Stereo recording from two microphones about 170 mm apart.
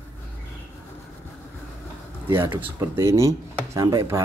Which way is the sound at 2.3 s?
15° right (ahead or behind).